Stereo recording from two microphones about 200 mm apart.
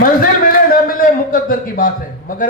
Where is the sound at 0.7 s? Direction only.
45° left (ahead or behind).